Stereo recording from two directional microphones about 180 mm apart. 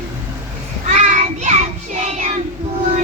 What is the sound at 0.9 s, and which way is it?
Child singing, 40° right (ahead or behind).